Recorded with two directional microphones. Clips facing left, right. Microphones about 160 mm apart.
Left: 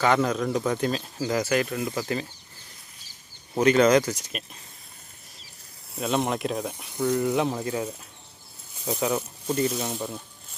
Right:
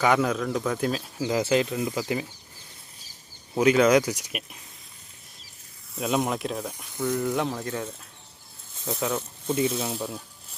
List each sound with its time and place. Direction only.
0.0 s speech: 5° right (ahead or behind)
1.2 s speech: 20° right (ahead or behind)
1.7 s speech: 10° right (ahead or behind)
3.5 s speech: 5° right (ahead or behind)
6.0 s speech: centre (ahead or behind)
6.9 s speech: 20° left (ahead or behind)
9.0 s speech: 5° left (ahead or behind)
9.6 s speech: 5° right (ahead or behind)